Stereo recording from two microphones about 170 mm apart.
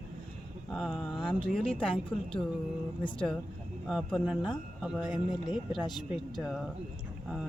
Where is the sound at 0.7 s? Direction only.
Centre (ahead or behind).